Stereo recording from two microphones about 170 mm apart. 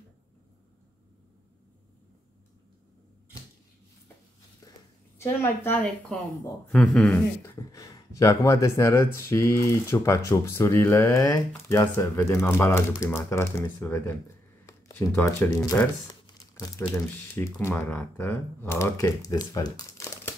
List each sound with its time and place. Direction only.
5.2 s speech: 10° left (ahead or behind)
6.7 s dog: 5° left (ahead or behind)
7.5 s speech: 20° left (ahead or behind)